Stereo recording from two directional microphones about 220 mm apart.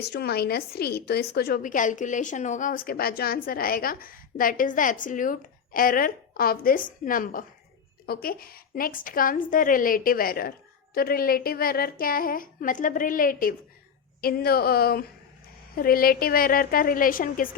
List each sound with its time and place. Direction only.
0.1 s a woman's voice: 45° left (ahead or behind)